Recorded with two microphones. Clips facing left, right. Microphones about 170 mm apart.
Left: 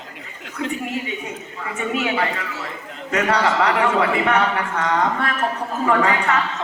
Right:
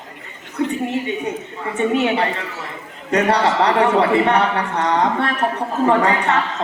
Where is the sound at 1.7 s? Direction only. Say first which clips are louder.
Right 5 dB; 30° right (ahead or behind).